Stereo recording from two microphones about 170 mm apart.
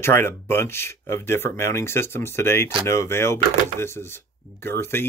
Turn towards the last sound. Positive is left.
turn(degrees=15)  # may be behind; listen again after turning